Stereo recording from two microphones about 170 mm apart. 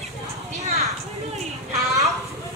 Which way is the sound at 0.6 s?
40° right (ahead or behind).